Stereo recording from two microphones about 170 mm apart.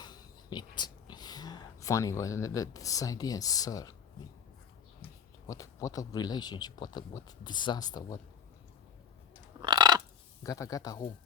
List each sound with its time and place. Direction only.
0.0 s whispering: 25° left (ahead or behind)
1.1 s speech: 25° left (ahead or behind)
5.5 s speech: 20° left (ahead or behind)
9.6 s a sound: 25° right (ahead or behind)
10.4 s speech: 20° left (ahead or behind)